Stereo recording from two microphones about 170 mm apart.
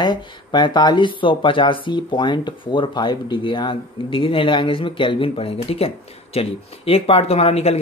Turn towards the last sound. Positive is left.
turn(degrees=35)  # may be behind; listen again after turning